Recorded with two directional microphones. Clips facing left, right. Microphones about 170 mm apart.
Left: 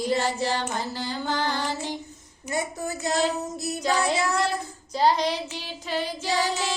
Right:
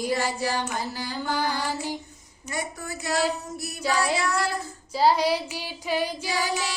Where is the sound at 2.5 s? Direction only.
25° left (ahead or behind).